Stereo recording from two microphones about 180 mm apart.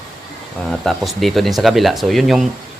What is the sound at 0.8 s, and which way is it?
Speech, centre (ahead or behind).